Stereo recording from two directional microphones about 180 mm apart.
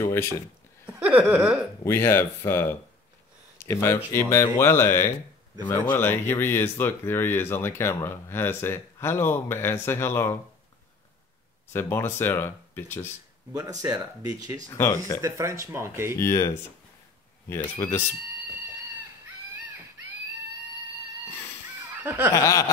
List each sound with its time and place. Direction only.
0.0 s speech: 15° left (ahead or behind)
0.8 s speech: 10° right (ahead or behind)
1.9 s speech: 15° left (ahead or behind)
11.7 s speech: 10° left (ahead or behind)
13.5 s speech: 20° right (ahead or behind)
14.7 s speech: 15° left (ahead or behind)
15.2 s speech: 15° right (ahead or behind)
16.2 s speech: 15° left (ahead or behind)
22.0 s snicker: 10° right (ahead or behind)
22.3 s speech: 15° left (ahead or behind)